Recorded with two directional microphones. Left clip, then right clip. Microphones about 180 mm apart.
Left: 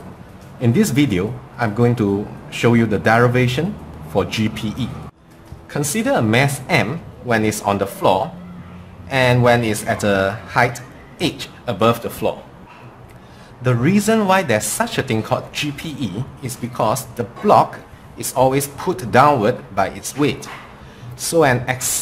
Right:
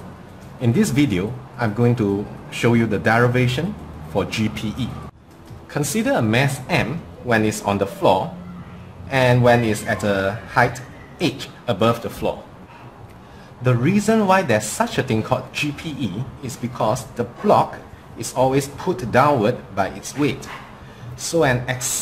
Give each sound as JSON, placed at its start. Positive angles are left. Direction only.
{"t": 0.6, "sound": "speech", "side_deg": 10}
{"t": 13.7, "sound": "speech", "side_deg": 20}